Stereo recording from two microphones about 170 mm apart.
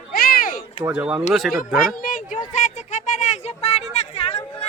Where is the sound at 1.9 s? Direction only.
55° left (ahead or behind).